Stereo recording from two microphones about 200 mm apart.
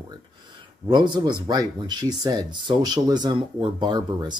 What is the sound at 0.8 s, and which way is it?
Speech, 20° right (ahead or behind).